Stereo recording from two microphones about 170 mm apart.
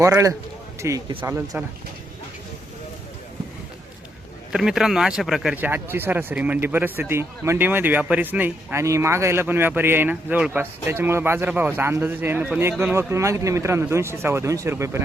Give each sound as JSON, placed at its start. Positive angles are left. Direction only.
{"t": 0.0, "sound": "speech", "side_deg": -20}
{"t": 1.2, "sound": "speech", "side_deg": -10}
{"t": 4.5, "sound": "speech", "side_deg": 0}